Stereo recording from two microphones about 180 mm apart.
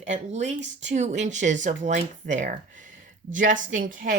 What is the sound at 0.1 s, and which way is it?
Speech, 40° right (ahead or behind).